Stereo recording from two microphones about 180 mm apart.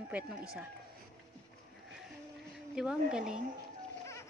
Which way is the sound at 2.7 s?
5° right (ahead or behind).